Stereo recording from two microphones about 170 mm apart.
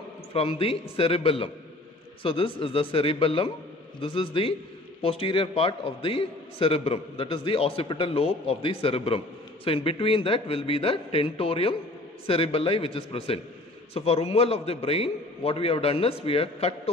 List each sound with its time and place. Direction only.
0.3 s a man's voice: 35° left (ahead or behind)